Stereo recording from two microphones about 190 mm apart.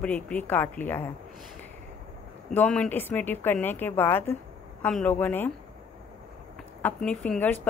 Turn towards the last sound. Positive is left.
turn(degrees=10)  # may be behind; listen again after turning